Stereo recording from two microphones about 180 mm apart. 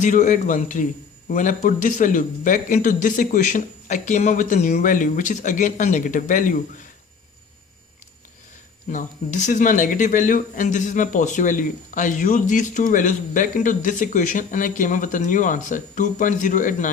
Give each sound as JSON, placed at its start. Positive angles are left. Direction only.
{"t": 0.0, "sound": "speech", "side_deg": 45}
{"t": 8.9, "sound": "speech", "side_deg": 45}